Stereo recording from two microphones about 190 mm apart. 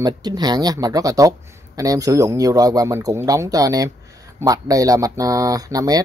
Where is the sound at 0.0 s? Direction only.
20° right (ahead or behind).